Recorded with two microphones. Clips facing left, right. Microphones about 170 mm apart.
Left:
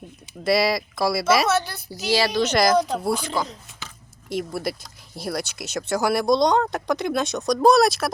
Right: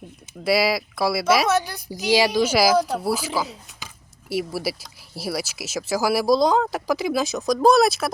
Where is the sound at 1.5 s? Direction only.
15° right (ahead or behind).